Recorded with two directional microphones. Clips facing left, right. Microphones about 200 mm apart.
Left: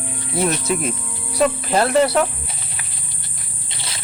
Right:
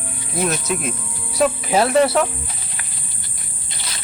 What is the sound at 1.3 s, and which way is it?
Speech, 5° right (ahead or behind).